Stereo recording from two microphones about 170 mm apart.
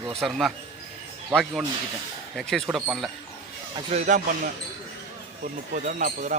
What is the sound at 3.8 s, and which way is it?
Speech, 40° right (ahead or behind).